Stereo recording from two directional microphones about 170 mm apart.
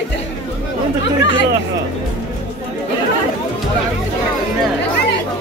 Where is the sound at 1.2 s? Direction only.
90° left.